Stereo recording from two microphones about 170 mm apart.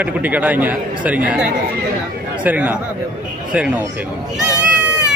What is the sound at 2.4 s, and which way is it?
Speech, 10° right (ahead or behind).